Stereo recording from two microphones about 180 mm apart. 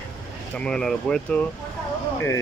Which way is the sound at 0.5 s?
5° left (ahead or behind).